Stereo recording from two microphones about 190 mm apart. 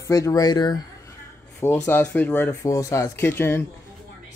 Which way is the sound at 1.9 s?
10° left (ahead or behind).